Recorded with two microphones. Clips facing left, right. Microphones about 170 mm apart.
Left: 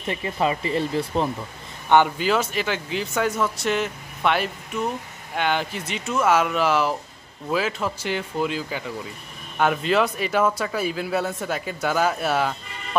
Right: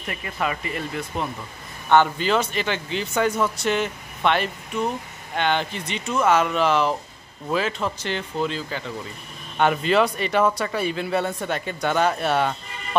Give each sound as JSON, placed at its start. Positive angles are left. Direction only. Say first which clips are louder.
{"t": 0.0, "sound": "speech", "louder": "left 4 dB", "side_deg": 25}
{"t": 1.9, "sound": "speech", "louder": "even", "side_deg": 10}
{"t": 9.6, "sound": "speech", "louder": "right 1 dB", "side_deg": 0}